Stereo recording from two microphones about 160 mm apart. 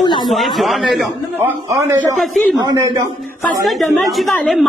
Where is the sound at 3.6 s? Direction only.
Centre (ahead or behind).